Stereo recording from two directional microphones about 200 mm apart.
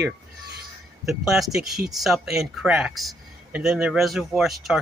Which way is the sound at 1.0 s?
Centre (ahead or behind).